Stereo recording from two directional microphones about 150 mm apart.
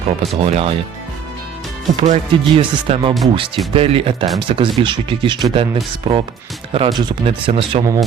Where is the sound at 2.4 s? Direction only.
40° right (ahead or behind).